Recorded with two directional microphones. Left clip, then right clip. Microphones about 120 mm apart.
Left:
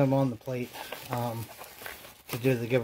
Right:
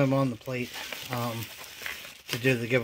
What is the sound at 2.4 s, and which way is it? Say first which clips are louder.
Speech: right 1 dB; centre (ahead or behind).